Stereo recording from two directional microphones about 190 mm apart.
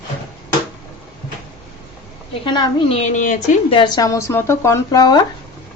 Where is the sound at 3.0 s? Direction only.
40° left (ahead or behind).